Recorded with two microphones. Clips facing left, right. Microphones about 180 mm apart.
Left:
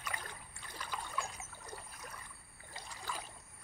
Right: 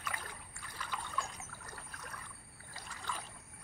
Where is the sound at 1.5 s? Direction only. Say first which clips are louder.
Left 2 dB; 15° left (ahead or behind).